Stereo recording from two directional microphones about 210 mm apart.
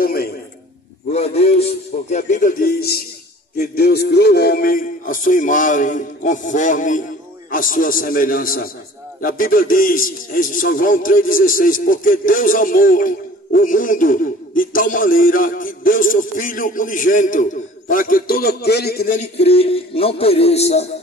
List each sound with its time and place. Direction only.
0.0 s a sound: 45° left (ahead or behind)
1.1 s a man's voice: 30° left (ahead or behind); by 19.1 s 50° left (ahead or behind)
19.1 s speech: 30° left (ahead or behind)